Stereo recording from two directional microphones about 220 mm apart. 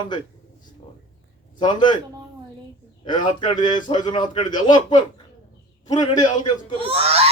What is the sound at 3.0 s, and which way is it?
A man's voice, 20° left (ahead or behind).